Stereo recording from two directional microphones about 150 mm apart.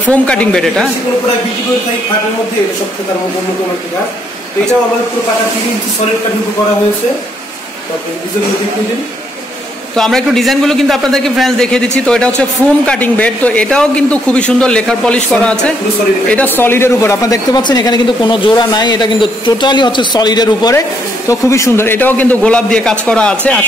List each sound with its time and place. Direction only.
0.1 s a man's voice: 5° left (ahead or behind)
9.9 s a man's voice: 5° left (ahead or behind)